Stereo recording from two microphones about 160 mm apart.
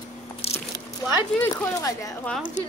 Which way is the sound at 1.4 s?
20° left (ahead or behind).